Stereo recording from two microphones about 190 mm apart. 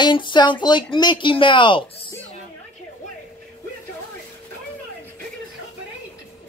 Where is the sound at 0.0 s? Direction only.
25° left (ahead or behind).